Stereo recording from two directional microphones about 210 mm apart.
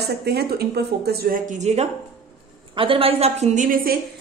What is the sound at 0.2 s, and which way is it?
A woman's voice, 50° right (ahead or behind).